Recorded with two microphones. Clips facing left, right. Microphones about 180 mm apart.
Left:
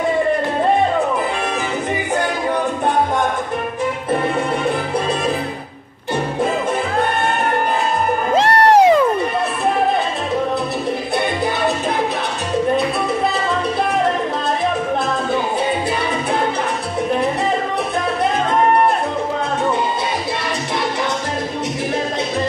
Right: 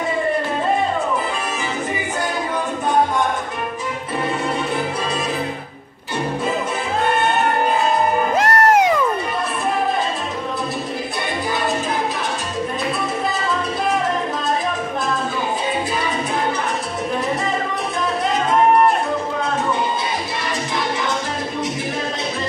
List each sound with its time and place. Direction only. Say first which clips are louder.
8.4 s music: left 4 dB; 30° left (ahead or behind)